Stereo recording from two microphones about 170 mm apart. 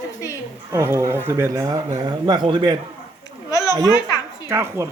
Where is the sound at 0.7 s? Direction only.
15° right (ahead or behind).